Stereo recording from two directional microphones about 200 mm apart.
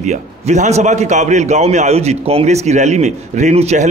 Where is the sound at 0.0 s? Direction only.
35° right (ahead or behind).